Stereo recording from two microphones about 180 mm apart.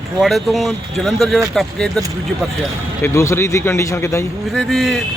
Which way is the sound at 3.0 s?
15° left (ahead or behind).